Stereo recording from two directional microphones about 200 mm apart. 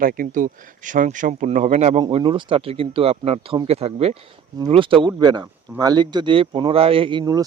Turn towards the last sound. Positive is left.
turn(degrees=-20)  # may be behind; listen again after turning